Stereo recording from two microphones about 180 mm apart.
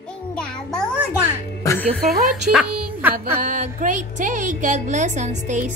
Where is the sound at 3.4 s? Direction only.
45° right (ahead or behind).